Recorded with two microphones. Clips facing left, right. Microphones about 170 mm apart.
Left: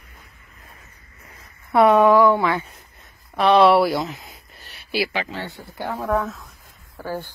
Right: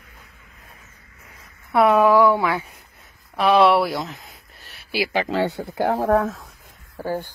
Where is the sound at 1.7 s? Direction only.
Centre (ahead or behind).